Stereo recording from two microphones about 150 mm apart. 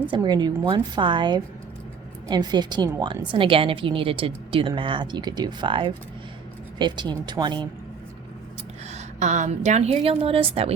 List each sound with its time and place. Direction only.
0.1 s a woman's voice: 30° right (ahead or behind)
8.9 s a woman's voice: 50° right (ahead or behind)